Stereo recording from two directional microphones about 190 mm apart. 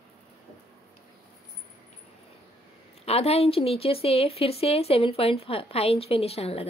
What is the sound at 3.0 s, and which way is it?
Speech, 30° left (ahead or behind).